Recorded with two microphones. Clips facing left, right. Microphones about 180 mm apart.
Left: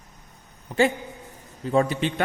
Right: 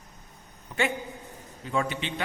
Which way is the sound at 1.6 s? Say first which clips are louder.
Left 7 dB; 35° left (ahead or behind).